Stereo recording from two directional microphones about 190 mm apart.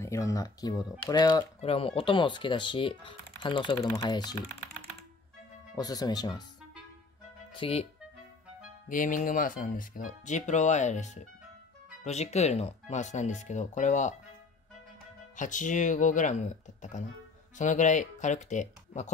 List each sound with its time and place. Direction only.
0.0 s speech: 15° left (ahead or behind)
1.6 s speech: 30° left (ahead or behind)
5.8 s speech: 20° left (ahead or behind)
7.5 s speech: 30° left (ahead or behind)
8.8 s speech: 45° left (ahead or behind)
15.3 s speech: 40° left (ahead or behind)